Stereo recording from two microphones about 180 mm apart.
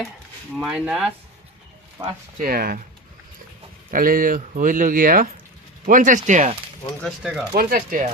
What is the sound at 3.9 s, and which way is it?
Speech, 50° right (ahead or behind).